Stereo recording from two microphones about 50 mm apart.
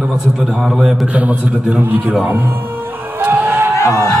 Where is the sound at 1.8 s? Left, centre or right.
Right.